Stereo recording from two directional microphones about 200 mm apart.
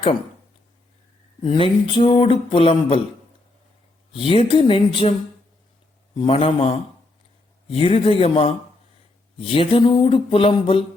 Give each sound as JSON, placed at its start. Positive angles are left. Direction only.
{"t": 1.5, "sound": "speech", "side_deg": 25}
{"t": 4.1, "sound": "speech", "side_deg": 25}
{"t": 6.1, "sound": "speech", "side_deg": 30}